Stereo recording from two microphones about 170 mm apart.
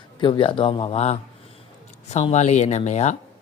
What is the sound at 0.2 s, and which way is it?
Speech, 30° left (ahead or behind).